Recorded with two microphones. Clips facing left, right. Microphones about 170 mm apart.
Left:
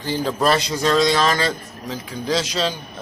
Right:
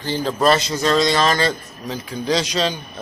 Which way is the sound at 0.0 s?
5° left (ahead or behind).